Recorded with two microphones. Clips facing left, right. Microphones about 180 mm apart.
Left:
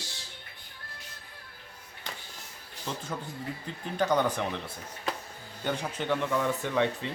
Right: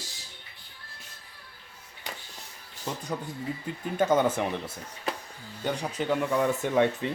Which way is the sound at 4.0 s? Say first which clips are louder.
Right 3 dB; 20° right (ahead or behind).